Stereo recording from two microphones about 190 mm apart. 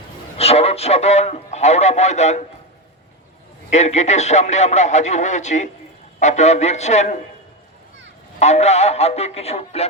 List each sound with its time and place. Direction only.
0.3 s speech: 35° left (ahead or behind)
3.7 s speech: 35° left (ahead or behind)
8.4 s speech: 35° left (ahead or behind)